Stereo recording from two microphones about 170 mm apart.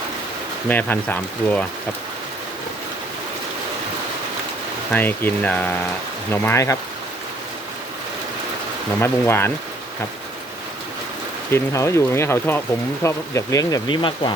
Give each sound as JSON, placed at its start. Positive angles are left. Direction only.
{"t": 0.7, "sound": "speech", "side_deg": 10}
{"t": 4.9, "sound": "speech", "side_deg": 10}
{"t": 9.0, "sound": "speech", "side_deg": 15}
{"t": 11.5, "sound": "speech", "side_deg": 15}